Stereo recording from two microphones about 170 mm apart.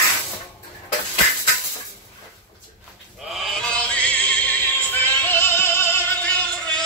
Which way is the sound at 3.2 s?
Centre (ahead or behind).